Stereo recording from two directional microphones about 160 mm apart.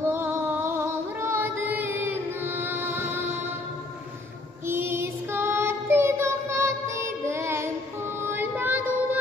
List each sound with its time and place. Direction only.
0.0 s female singing: 15° right (ahead or behind)
4.6 s child singing: 15° right (ahead or behind)